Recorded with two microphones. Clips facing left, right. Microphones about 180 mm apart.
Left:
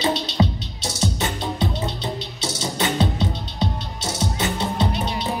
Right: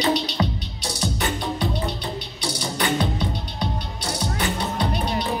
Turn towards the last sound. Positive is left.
turn(degrees=20)  # may be behind; listen again after turning